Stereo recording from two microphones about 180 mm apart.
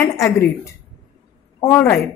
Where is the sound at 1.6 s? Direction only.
15° left (ahead or behind).